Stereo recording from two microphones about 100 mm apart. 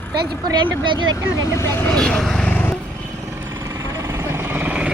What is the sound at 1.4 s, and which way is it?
Speech, 25° left (ahead or behind).